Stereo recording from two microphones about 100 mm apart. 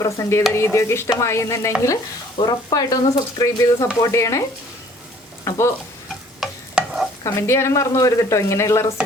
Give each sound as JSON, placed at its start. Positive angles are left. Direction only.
{"t": 0.0, "sound": "speech", "side_deg": 30}
{"t": 2.4, "sound": "speech", "side_deg": 45}
{"t": 5.5, "sound": "speech", "side_deg": 30}
{"t": 6.4, "sound": "stir", "side_deg": -5}
{"t": 7.3, "sound": "speech", "side_deg": 25}